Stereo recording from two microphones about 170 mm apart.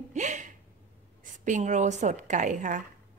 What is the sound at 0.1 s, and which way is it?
Gasp, 45° right (ahead or behind).